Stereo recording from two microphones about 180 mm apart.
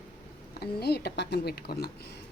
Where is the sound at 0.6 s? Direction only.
65° left (ahead or behind).